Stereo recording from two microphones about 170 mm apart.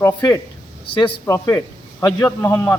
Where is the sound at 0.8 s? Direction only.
30° left (ahead or behind).